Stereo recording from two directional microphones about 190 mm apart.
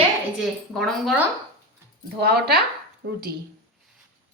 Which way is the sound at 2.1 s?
55° right (ahead or behind).